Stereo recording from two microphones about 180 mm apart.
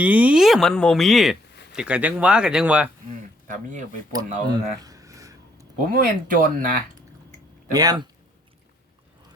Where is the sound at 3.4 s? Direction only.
45° right (ahead or behind).